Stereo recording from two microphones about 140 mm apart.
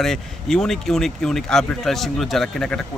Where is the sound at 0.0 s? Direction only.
5° left (ahead or behind).